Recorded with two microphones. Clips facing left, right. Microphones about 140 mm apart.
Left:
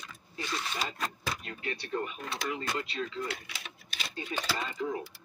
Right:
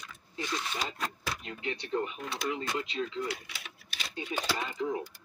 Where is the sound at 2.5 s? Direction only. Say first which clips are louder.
Right 1 dB; 20° right (ahead or behind).